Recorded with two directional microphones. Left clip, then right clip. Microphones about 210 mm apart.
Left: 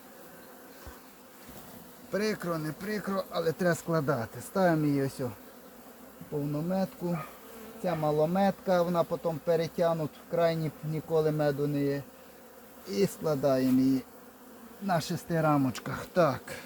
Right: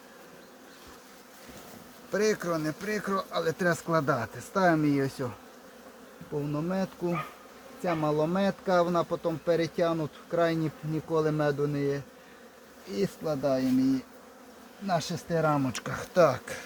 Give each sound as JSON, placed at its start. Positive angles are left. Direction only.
{"t": 2.1, "sound": "speech", "side_deg": -15}
{"t": 6.7, "sound": "a man's voice", "side_deg": -10}
{"t": 13.2, "sound": "speech", "side_deg": 35}
{"t": 14.8, "sound": "speech", "side_deg": 0}